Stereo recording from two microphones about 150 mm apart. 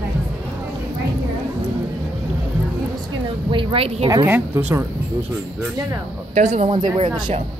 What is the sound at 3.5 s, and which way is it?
Speech, 35° right (ahead or behind).